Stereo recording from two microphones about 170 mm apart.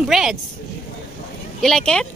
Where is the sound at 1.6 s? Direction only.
5° left (ahead or behind).